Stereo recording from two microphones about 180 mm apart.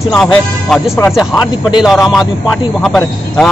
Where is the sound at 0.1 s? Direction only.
5° left (ahead or behind).